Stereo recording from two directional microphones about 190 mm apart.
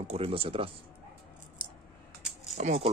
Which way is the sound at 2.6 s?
35° right (ahead or behind).